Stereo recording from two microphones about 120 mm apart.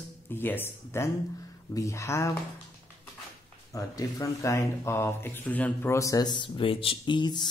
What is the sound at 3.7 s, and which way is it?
Speech, 30° left (ahead or behind).